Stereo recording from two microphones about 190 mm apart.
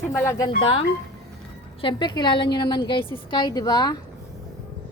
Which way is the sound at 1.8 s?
25° left (ahead or behind).